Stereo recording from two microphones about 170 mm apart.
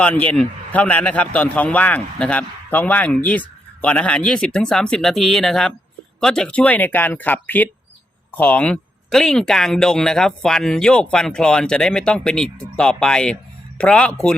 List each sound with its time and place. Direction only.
0.0 s a man's voice: 10° left (ahead or behind)